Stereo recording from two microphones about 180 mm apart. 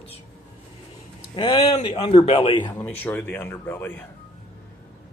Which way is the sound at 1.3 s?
25° left (ahead or behind).